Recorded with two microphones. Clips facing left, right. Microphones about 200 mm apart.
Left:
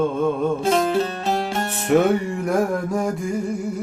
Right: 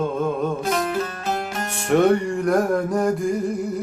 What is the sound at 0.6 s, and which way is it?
Music, 30° left (ahead or behind).